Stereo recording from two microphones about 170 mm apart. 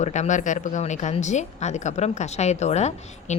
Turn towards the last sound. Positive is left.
turn(degrees=40)  # may be behind; listen again after turning